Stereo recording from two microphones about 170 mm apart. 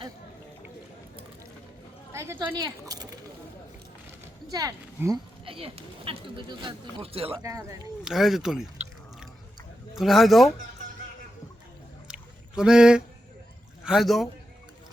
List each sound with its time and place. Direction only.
2.1 s speech: 15° right (ahead or behind)
4.4 s speech: 20° right (ahead or behind)
5.5 s speech: 35° right (ahead or behind)
7.4 s speech: 20° right (ahead or behind)
8.0 s speech: centre (ahead or behind)
9.9 s speech: centre (ahead or behind)
12.0 s rowboat: 5° right (ahead or behind)
13.8 s speech: centre (ahead or behind)